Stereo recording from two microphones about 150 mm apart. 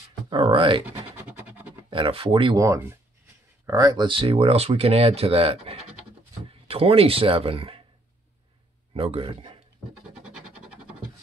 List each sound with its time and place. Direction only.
0.3 s speech: 35° right (ahead or behind)
1.9 s speech: 35° right (ahead or behind)
2.6 s speech: 20° right (ahead or behind); by 7.8 s 35° right (ahead or behind)
8.9 s speech: 40° right (ahead or behind)
10.3 s a sound: 5° right (ahead or behind)